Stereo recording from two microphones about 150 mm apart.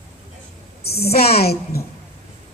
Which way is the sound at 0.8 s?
90° left.